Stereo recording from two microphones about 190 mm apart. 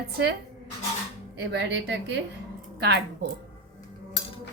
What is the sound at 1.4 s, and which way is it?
A woman's voice, 65° right (ahead or behind).